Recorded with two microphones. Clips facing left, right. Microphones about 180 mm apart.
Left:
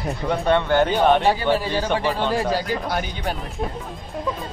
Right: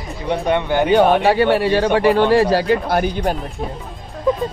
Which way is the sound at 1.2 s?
70° right (ahead or behind).